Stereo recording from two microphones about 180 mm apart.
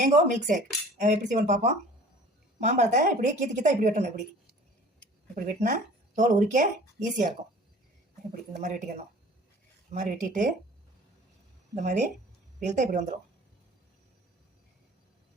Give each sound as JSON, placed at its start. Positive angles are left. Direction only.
{"t": 0.0, "sound": "speech", "side_deg": -45}
{"t": 5.3, "sound": "speech", "side_deg": -45}
{"t": 8.3, "sound": "speech", "side_deg": -45}
{"t": 9.9, "sound": "speech", "side_deg": -45}
{"t": 11.7, "sound": "speech", "side_deg": -40}